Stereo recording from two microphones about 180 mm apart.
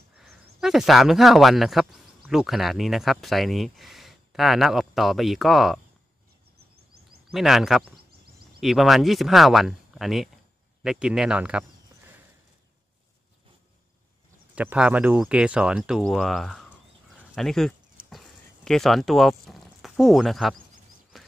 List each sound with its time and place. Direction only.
0.2 s speech: centre (ahead or behind)
7.2 s speech: centre (ahead or behind)
14.5 s speech: 10° right (ahead or behind)
17.4 s a sound: centre (ahead or behind)